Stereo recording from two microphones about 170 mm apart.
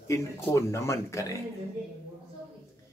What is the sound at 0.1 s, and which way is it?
Speech, 15° left (ahead or behind).